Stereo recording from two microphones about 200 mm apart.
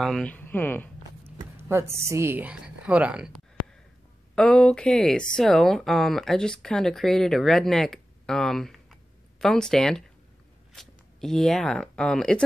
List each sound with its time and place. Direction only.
0.0 s speech: 5° left (ahead or behind)
1.2 s speech: 10° right (ahead or behind)
4.4 s speech: 5° left (ahead or behind)